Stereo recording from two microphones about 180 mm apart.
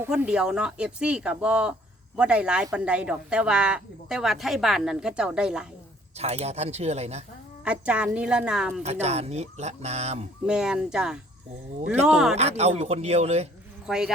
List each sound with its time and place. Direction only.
0.0 s speech: 10° right (ahead or behind)
6.1 s speech: 35° right (ahead or behind)
7.6 s speech: 5° right (ahead or behind)
8.8 s speech: 35° right (ahead or behind)
10.4 s speech: 5° right (ahead or behind)
12.4 s speech: 35° right (ahead or behind)
13.8 s speech: 5° right (ahead or behind)